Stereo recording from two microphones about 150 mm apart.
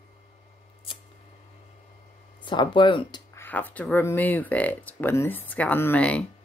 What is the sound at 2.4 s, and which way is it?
Speech, 30° left (ahead or behind).